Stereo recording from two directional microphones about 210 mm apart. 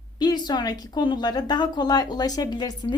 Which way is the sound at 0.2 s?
20° left (ahead or behind).